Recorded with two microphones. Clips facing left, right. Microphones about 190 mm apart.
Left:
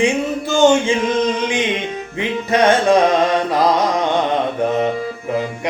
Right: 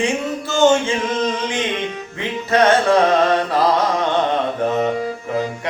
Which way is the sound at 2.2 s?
15° left (ahead or behind).